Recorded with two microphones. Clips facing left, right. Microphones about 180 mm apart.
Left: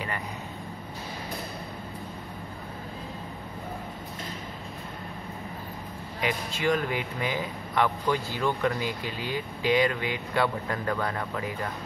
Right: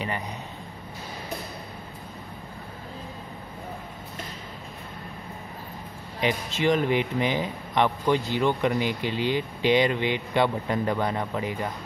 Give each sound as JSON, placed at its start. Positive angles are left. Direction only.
{"t": 6.2, "sound": "speech", "side_deg": -25}